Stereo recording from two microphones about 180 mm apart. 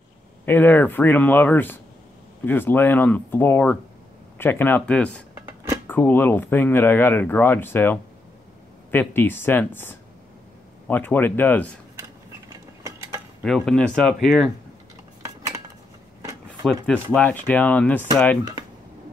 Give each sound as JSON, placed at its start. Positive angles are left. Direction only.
{"t": 0.5, "sound": "speech", "side_deg": 10}
{"t": 12.5, "sound": "a sound", "side_deg": -15}
{"t": 13.4, "sound": "speech", "side_deg": 0}
{"t": 15.2, "sound": "cutlery", "side_deg": -20}
{"t": 16.6, "sound": "speech", "side_deg": 5}